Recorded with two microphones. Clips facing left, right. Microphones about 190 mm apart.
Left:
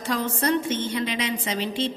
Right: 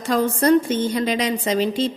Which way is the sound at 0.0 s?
40° right (ahead or behind).